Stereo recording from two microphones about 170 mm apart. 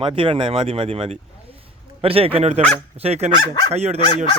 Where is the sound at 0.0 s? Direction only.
30° right (ahead or behind).